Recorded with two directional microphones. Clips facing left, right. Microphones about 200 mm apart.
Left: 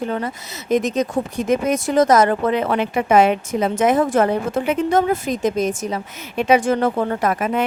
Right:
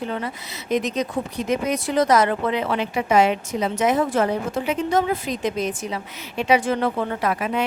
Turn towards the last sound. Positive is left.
turn(degrees=50)  # may be behind; listen again after turning